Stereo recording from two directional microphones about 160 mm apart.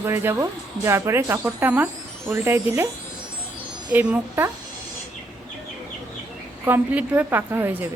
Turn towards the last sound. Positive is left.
turn(degrees=-15)  # may be behind; listen again after turning